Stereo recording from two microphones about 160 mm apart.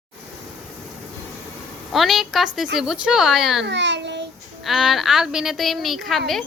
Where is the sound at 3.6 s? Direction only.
90° right.